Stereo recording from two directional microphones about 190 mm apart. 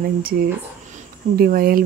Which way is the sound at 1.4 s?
50° right (ahead or behind).